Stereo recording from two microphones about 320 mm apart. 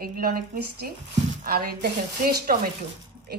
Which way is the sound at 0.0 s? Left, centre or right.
Right.